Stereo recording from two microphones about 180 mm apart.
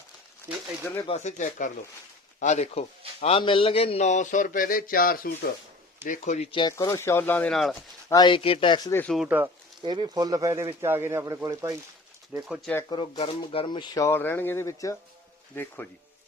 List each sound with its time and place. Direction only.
1.0 s speech: 40° left (ahead or behind)
6.1 s speech: 40° left (ahead or behind)
6.5 s speech: 25° left (ahead or behind); by 7.8 s 5° left (ahead or behind)
8.1 s speech: 25° left (ahead or behind)
8.9 s speech: 10° left (ahead or behind)
9.1 s speech: 5° right (ahead or behind)
9.8 s speech: 25° right (ahead or behind)
12.9 s speech: 30° left (ahead or behind); by 15.9 s 10° left (ahead or behind)